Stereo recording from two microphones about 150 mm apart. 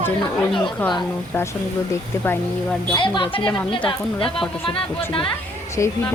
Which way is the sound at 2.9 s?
30° left (ahead or behind).